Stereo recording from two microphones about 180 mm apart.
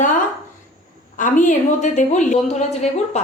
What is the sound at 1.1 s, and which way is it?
A woman's voice, 45° left (ahead or behind).